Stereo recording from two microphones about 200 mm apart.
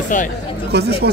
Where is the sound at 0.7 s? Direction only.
55° right (ahead or behind).